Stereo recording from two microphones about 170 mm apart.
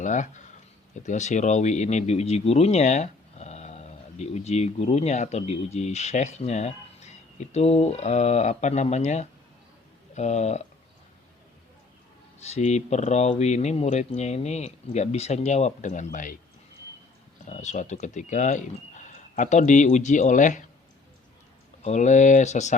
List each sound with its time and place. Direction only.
0.0 s speech: 45° left (ahead or behind)
12.5 s speech: 40° left (ahead or behind)
17.4 s speech: 45° left (ahead or behind)
21.8 s speech: 45° left (ahead or behind)